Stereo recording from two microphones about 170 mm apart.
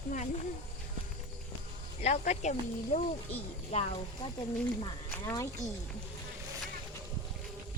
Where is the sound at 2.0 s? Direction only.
45° left (ahead or behind).